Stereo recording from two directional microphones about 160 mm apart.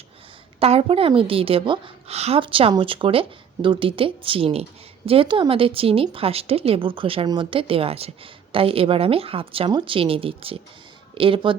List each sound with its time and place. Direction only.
0.6 s speech: 40° right (ahead or behind)